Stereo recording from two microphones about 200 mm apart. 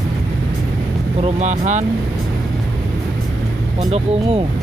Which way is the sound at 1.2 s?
35° right (ahead or behind).